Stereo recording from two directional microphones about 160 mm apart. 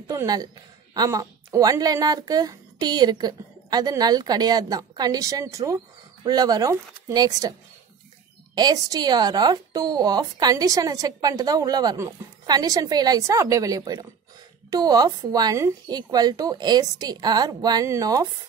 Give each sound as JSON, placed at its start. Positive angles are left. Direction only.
{"t": 0.1, "sound": "a woman's voice", "side_deg": -20}
{"t": 8.5, "sound": "a woman's voice", "side_deg": -25}